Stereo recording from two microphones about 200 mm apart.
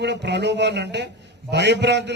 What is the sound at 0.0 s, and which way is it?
A man's voice, 60° right (ahead or behind).